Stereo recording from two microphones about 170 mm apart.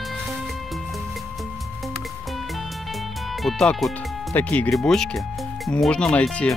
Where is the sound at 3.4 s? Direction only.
Centre (ahead or behind).